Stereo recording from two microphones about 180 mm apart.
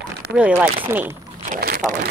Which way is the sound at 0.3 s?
10° right (ahead or behind).